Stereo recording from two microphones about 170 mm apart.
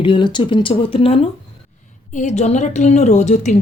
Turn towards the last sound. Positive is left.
turn(degrees=45)  # may be behind; listen again after turning